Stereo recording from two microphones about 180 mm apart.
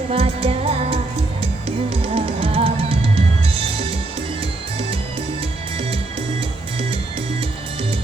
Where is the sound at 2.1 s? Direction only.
30° right (ahead or behind).